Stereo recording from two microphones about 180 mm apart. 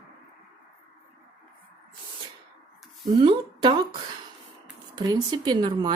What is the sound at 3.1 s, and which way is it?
Speech, 25° right (ahead or behind).